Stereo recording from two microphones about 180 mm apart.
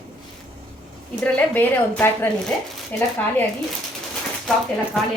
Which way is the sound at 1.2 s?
10° left (ahead or behind).